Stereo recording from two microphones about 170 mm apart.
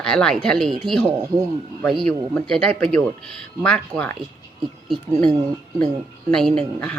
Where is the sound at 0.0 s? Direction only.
5° left (ahead or behind).